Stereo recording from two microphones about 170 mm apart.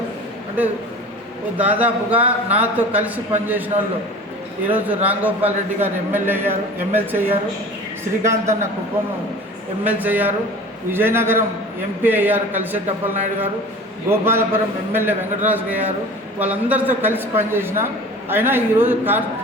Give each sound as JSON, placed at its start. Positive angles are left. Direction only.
{"t": 1.5, "sound": "a man's voice", "side_deg": -10}
{"t": 4.6, "sound": "a man's voice", "side_deg": -10}
{"t": 9.8, "sound": "a man's voice", "side_deg": -10}